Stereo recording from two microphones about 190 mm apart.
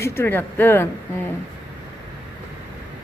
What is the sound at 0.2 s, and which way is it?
Speech, 10° left (ahead or behind).